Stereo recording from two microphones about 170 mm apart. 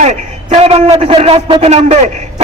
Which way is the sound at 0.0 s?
40° right (ahead or behind).